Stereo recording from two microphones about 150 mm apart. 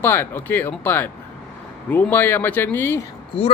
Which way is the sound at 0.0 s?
15° left (ahead or behind).